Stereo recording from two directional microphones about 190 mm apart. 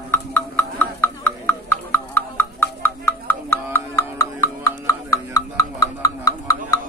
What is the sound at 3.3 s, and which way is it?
Music, 10° left (ahead or behind).